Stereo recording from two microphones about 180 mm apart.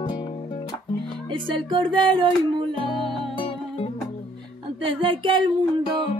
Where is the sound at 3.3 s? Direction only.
30° left (ahead or behind).